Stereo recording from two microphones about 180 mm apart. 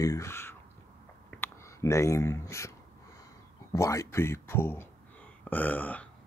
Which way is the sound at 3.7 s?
15° left (ahead or behind).